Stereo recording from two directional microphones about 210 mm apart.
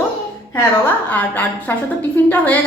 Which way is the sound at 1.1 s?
10° left (ahead or behind).